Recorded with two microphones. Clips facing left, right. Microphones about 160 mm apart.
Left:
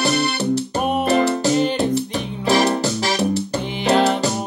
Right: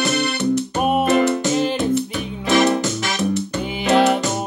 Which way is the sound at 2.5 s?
35° left (ahead or behind).